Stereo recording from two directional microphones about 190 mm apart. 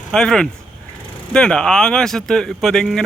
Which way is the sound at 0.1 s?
5° left (ahead or behind).